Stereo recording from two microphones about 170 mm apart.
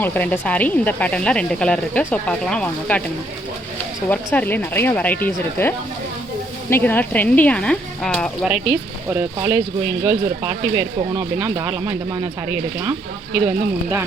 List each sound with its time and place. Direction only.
0.0 s speech: 10° left (ahead or behind)
4.1 s speech: 10° left (ahead or behind)
8.4 s speech: 5° right (ahead or behind)